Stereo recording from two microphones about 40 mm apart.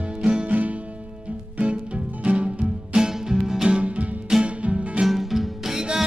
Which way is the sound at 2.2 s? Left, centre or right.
Right.